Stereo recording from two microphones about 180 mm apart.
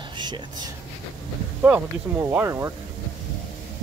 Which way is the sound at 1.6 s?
10° right (ahead or behind).